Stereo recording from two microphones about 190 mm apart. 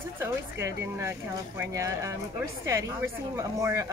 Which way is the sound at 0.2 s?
15° right (ahead or behind).